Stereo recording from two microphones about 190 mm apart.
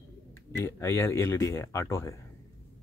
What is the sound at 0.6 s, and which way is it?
Speech, 15° left (ahead or behind).